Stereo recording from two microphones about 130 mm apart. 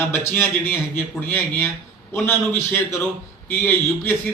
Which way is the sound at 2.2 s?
20° left (ahead or behind).